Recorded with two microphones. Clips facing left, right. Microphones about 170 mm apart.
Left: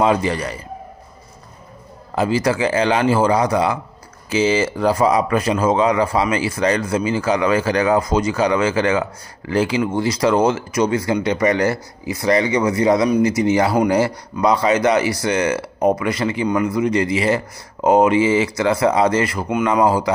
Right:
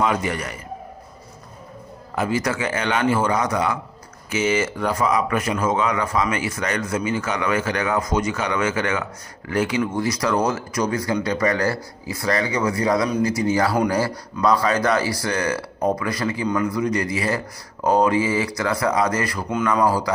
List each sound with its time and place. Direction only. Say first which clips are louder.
0.0 s speech: left 5 dB; 30° left (ahead or behind)
2.1 s speech: left 5 dB; 30° left (ahead or behind)